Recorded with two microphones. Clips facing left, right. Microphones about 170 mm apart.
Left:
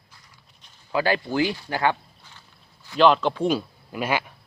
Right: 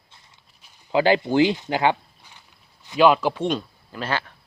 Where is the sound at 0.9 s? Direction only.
20° right (ahead or behind); by 3.6 s centre (ahead or behind).